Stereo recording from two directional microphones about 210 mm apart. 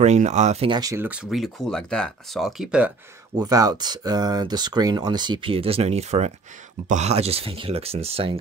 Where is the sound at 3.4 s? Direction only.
20° right (ahead or behind).